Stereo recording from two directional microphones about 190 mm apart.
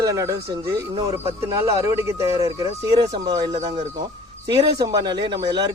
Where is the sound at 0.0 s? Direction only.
15° right (ahead or behind).